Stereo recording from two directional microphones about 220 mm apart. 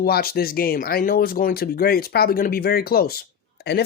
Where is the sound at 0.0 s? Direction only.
45° left (ahead or behind).